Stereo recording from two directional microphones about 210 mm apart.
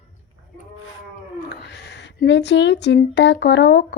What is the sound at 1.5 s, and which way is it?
A woman's voice, 55° left (ahead or behind).